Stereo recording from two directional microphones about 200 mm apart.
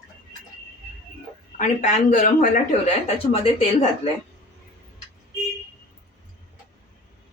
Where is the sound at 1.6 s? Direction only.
40° left (ahead or behind).